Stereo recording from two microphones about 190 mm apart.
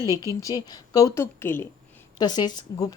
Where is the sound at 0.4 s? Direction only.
20° left (ahead or behind).